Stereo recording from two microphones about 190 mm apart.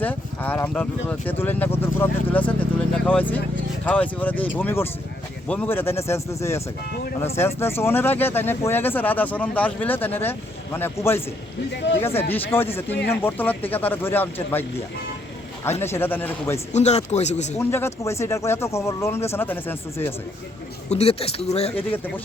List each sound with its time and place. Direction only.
0.0 s speech: 10° left (ahead or behind)
15.8 s speech: 10° left (ahead or behind)
16.7 s speech: 35° left (ahead or behind)
17.6 s speech: 15° left (ahead or behind)
20.9 s speech: 30° left (ahead or behind)